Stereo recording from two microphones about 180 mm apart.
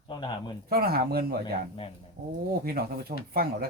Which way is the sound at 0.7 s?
60° right (ahead or behind).